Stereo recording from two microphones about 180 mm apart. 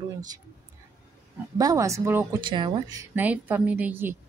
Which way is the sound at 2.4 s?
25° right (ahead or behind).